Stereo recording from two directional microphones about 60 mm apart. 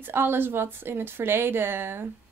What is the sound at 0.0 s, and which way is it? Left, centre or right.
Speech, right.